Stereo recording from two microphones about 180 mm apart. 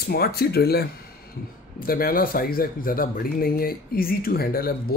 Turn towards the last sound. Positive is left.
turn(degrees=55)  # may be behind; listen again after turning